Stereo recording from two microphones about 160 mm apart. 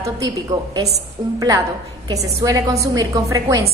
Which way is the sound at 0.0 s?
20° right (ahead or behind).